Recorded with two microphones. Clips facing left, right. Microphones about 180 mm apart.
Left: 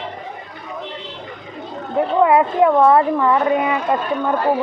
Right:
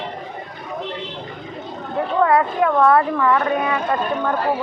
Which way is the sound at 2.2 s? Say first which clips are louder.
Left 3 dB; 20° left (ahead or behind).